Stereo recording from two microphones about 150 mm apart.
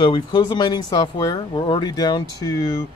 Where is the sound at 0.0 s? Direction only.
30° left (ahead or behind).